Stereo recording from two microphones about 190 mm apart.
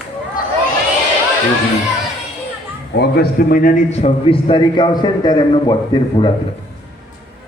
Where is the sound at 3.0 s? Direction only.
50° left (ahead or behind); by 6.3 s 25° left (ahead or behind).